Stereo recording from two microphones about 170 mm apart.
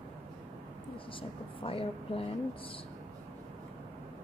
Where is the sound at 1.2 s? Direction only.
30° left (ahead or behind).